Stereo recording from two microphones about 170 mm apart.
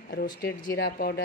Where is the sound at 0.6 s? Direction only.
65° left (ahead or behind).